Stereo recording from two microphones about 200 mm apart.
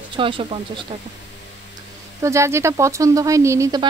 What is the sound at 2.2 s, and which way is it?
Speech, 15° right (ahead or behind).